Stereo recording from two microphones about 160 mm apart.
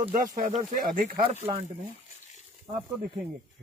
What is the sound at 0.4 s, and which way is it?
Speech, 55° right (ahead or behind).